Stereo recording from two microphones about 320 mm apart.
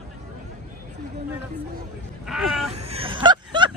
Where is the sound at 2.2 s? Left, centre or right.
Centre.